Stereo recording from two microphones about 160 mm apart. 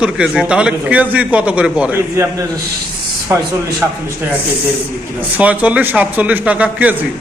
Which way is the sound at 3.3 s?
20° right (ahead or behind).